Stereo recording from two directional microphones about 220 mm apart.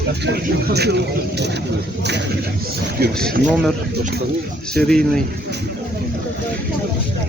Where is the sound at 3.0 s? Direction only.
45° right (ahead or behind).